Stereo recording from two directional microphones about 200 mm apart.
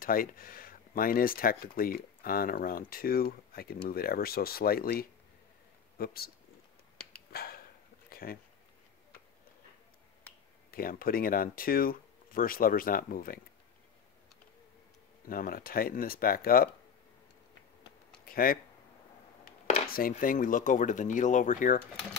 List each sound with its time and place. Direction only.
0.0 s speech: 45° left (ahead or behind)
7.3 s a sound: 50° left (ahead or behind)
10.7 s speech: 45° left (ahead or behind)
15.2 s speech: 45° left (ahead or behind)
18.2 s a sound: 45° left (ahead or behind)
19.9 s speech: 45° left (ahead or behind)